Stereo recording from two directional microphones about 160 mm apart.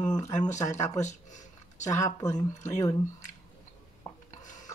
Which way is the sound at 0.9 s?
50° left (ahead or behind).